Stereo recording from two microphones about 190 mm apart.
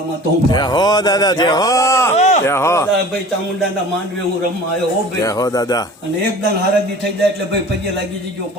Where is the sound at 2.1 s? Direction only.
35° left (ahead or behind).